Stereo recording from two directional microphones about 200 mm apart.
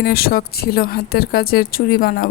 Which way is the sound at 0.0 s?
50° left (ahead or behind).